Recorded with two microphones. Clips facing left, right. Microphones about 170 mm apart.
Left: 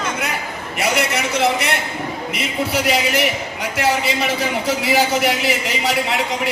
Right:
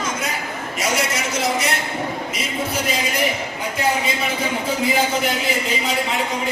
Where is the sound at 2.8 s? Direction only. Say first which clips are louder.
Left 4 dB; 75° left (ahead or behind).